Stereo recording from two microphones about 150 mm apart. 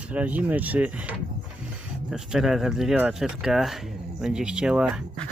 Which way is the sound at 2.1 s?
5° right (ahead or behind).